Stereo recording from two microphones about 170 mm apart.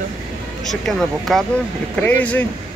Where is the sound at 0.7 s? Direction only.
Centre (ahead or behind).